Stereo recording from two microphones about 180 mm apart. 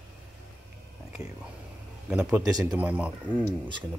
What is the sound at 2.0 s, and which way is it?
Speech, 5° right (ahead or behind).